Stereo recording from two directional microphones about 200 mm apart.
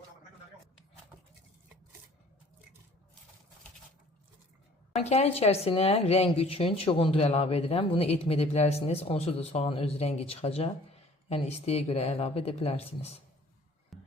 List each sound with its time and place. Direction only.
4.9 s a woman's voice: 35° left (ahead or behind)
13.9 s music: centre (ahead or behind)